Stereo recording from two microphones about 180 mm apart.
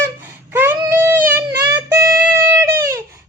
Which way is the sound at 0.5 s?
10° right (ahead or behind).